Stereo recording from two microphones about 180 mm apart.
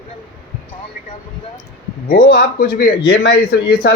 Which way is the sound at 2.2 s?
60° left (ahead or behind).